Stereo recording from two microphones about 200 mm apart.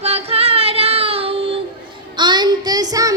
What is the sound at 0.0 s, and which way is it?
Child singing, 30° right (ahead or behind).